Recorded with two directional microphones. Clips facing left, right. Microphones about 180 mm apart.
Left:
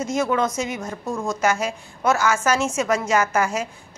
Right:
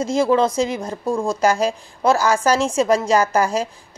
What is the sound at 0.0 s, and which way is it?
A woman's voice, 30° right (ahead or behind).